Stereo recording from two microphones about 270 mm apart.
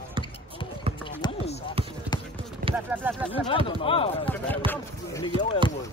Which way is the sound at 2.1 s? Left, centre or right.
Centre.